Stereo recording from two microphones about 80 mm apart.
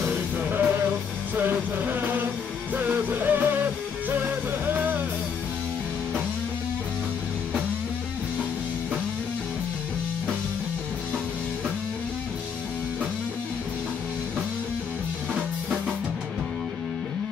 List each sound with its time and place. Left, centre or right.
0.1 s music: centre